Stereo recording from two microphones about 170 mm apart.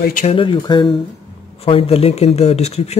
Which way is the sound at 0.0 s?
50° left (ahead or behind).